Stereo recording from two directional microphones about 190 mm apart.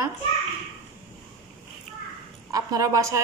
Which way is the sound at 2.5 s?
20° right (ahead or behind).